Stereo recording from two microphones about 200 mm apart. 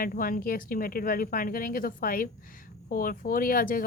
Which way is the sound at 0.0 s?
45° left (ahead or behind).